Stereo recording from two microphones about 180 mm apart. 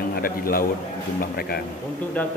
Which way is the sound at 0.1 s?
55° left (ahead or behind).